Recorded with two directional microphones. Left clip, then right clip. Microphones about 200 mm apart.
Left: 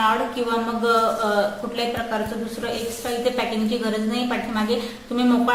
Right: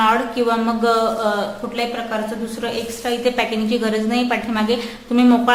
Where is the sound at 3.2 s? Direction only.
25° right (ahead or behind).